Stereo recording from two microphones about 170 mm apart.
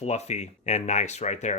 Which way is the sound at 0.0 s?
40° left (ahead or behind).